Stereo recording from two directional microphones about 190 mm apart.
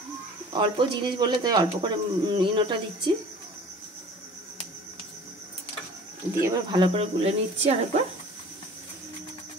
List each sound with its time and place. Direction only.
0.5 s speech: 25° right (ahead or behind)
6.4 s speech: 20° right (ahead or behind)